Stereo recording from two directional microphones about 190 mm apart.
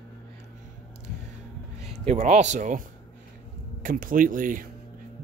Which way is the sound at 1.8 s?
35° right (ahead or behind).